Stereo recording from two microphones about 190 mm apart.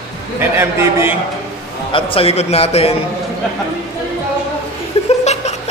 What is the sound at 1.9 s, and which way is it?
A man's voice, 30° left (ahead or behind).